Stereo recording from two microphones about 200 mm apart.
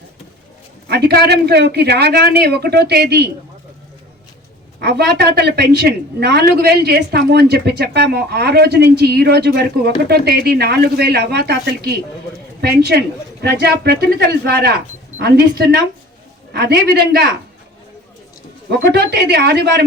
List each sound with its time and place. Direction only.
0.9 s a woman's voice: 55° right (ahead or behind)
4.8 s a woman's voice: 50° right (ahead or behind)
18.7 s a woman's voice: 55° right (ahead or behind)